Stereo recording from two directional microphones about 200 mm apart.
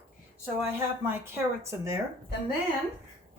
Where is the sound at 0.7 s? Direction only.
10° right (ahead or behind).